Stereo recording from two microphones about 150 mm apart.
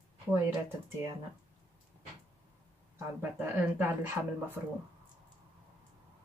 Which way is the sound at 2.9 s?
15° right (ahead or behind).